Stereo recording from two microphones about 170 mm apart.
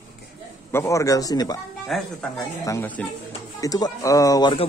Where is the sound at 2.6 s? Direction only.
15° left (ahead or behind).